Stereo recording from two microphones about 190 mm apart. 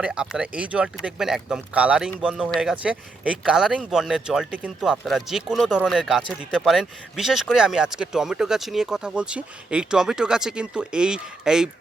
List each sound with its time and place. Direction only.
0.0 s speech: 5° right (ahead or behind)